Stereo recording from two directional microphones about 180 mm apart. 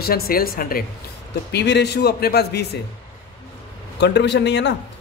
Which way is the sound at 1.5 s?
70° left (ahead or behind).